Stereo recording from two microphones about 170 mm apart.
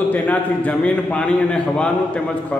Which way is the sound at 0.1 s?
10° left (ahead or behind).